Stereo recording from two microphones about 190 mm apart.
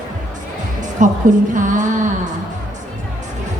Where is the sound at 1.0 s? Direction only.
40° right (ahead or behind).